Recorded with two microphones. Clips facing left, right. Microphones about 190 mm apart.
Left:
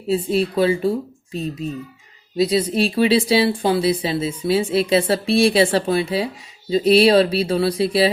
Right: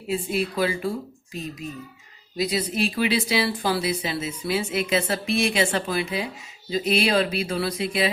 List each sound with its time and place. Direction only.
0.1 s speech: 30° left (ahead or behind)